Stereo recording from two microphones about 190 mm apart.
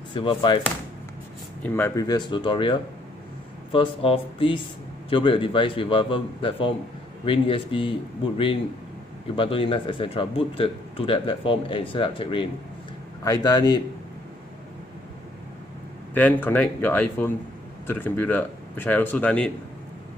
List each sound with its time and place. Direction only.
0.1 s speech: 25° left (ahead or behind)
1.6 s speech: 10° left (ahead or behind); by 7.9 s 25° left (ahead or behind)
9.3 s speech: 30° left (ahead or behind)
16.2 s speech: 10° left (ahead or behind)